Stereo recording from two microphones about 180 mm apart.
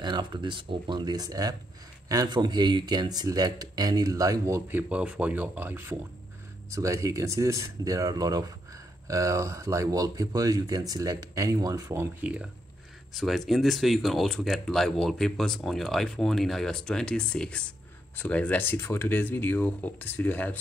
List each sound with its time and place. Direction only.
0.0 s speech: 25° right (ahead or behind); by 20.5 s 10° left (ahead or behind)